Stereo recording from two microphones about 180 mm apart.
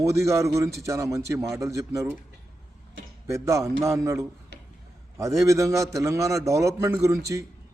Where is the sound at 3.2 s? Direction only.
15° right (ahead or behind).